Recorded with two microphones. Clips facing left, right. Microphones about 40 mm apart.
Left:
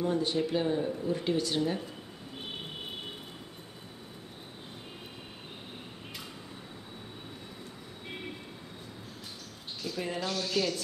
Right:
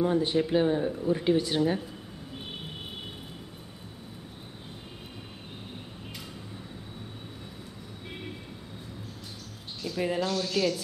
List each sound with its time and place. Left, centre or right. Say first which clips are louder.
0.0 s speech: right 4 dB; right
9.8 s a sound: right 6 dB; centre
10.2 s speech: even; centre